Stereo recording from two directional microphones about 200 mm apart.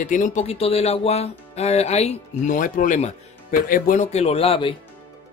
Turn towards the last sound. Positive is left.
turn(degrees=30)  # may be behind; listen again after turning